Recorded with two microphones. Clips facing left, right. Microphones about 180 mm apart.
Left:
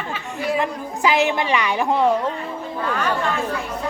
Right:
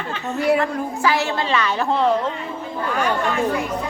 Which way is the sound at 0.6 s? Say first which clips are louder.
Right 1 dB; 20° left (ahead or behind).